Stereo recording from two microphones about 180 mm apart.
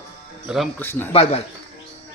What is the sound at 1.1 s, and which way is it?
Speech, 35° left (ahead or behind).